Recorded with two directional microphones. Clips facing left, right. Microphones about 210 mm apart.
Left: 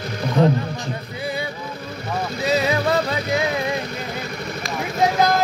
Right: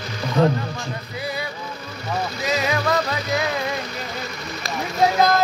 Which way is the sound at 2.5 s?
35° left (ahead or behind).